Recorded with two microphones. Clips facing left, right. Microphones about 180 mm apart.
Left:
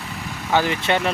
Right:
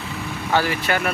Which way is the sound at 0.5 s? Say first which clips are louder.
Left 1 dB; 20° left (ahead or behind).